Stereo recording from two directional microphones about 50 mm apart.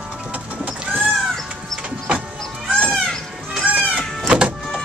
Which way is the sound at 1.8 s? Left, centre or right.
Centre.